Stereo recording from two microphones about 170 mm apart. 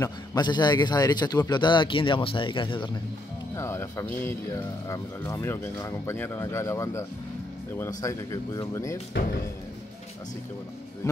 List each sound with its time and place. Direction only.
0.0 s speech: 25° left (ahead or behind)
3.5 s speech: 15° left (ahead or behind)
9.1 s speech: 90° left